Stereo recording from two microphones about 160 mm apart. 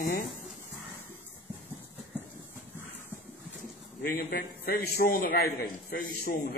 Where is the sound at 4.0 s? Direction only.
70° left (ahead or behind).